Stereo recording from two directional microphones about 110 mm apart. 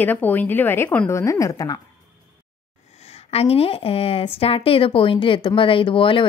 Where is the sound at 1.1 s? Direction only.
25° left (ahead or behind).